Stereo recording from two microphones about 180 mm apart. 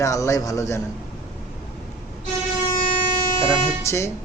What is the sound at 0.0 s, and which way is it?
Speech, 15° left (ahead or behind).